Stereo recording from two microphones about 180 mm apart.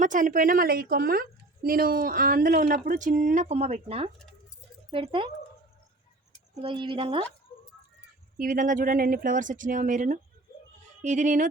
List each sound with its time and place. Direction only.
0.0 s a woman's voice: 45° right (ahead or behind); by 5.3 s 30° right (ahead or behind)
6.5 s a woman's voice: 25° right (ahead or behind)
8.4 s a woman's voice: 45° right (ahead or behind)